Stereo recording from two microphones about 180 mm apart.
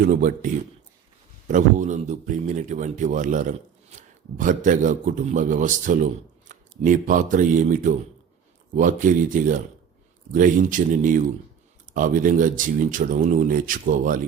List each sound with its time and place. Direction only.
0.0 s a man's voice: 50° right (ahead or behind)